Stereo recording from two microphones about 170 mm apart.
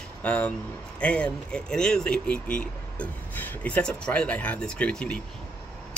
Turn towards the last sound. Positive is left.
turn(degrees=5)  # may be behind; listen again after turning